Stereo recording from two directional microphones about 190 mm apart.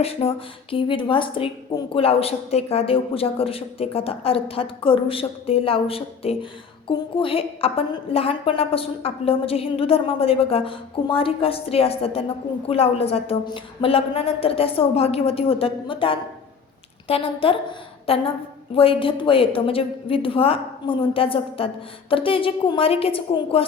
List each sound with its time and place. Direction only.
0.0 s a woman's voice: 30° left (ahead or behind)